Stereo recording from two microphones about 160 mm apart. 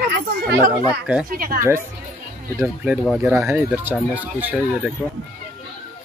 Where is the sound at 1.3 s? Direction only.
65° right (ahead or behind).